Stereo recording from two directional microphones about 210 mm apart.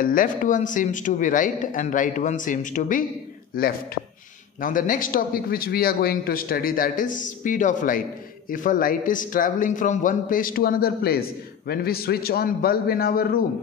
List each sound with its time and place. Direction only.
0.0 s a man's voice: 40° left (ahead or behind)